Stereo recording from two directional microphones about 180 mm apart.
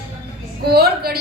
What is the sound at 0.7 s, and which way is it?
Speech, 60° right (ahead or behind).